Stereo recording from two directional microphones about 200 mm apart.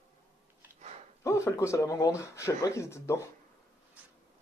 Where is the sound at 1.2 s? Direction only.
15° left (ahead or behind).